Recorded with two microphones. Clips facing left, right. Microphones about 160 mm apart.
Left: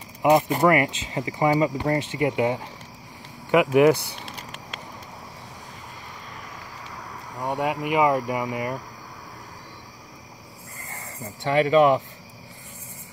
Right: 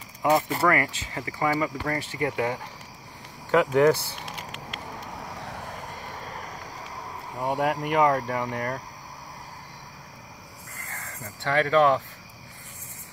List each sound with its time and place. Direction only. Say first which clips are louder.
0.2 s speech: left 4 dB; 20° left (ahead or behind)
5.4 s vehicle: right 5 dB; 60° right (ahead or behind)
7.3 s speech: even; centre (ahead or behind)
10.9 s speech: left 3 dB; 15° left (ahead or behind)